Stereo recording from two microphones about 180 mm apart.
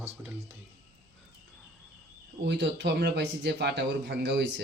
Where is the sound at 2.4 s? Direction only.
70° right (ahead or behind).